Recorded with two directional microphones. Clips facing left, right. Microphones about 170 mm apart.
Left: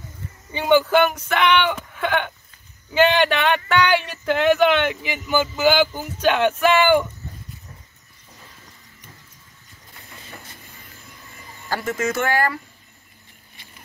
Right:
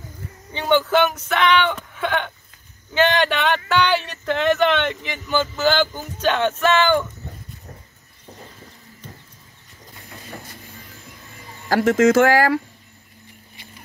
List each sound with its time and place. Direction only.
0.5 s speech: 5° left (ahead or behind)
11.7 s speech: 90° right